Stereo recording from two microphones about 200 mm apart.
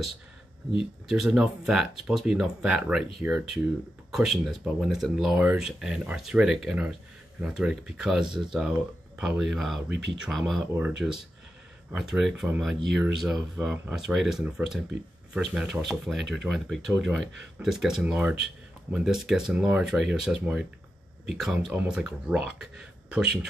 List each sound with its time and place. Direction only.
1.0 s speech: centre (ahead or behind)